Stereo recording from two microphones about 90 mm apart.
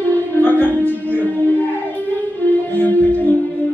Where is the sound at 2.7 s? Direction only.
20° left (ahead or behind).